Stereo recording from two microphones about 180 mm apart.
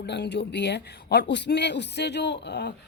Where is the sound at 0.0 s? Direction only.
70° left (ahead or behind).